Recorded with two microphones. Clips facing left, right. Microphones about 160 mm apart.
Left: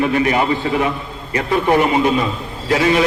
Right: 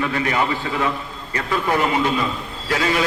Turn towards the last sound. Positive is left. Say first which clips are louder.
# left 6 dB
turn(degrees=25)  # may be behind; listen again after turning